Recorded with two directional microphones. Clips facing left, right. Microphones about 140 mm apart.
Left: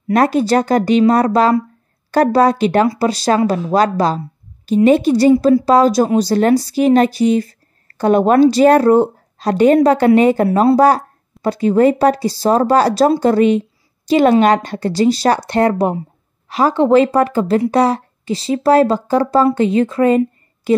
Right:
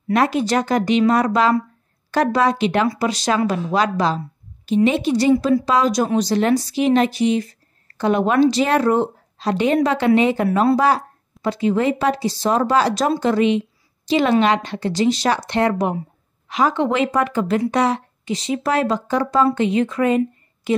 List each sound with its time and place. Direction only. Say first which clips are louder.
0.1 s speech: left 5 dB; 40° left (ahead or behind)